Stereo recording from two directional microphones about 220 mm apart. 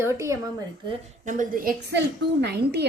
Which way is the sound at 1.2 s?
35° right (ahead or behind).